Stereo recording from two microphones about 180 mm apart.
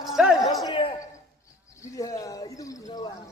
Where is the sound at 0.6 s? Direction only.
25° left (ahead or behind).